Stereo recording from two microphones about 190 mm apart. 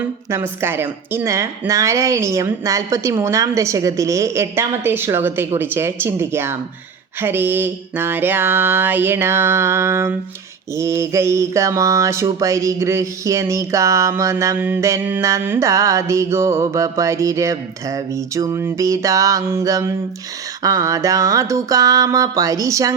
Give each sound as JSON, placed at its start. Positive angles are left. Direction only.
{"t": 0.3, "sound": "mantra", "side_deg": -15}